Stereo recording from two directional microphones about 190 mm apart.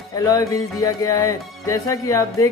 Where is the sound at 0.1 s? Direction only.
20° left (ahead or behind).